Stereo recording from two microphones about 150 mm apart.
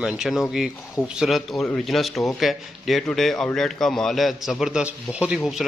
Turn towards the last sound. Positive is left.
turn(degrees=0)  # may be behind; listen again after turning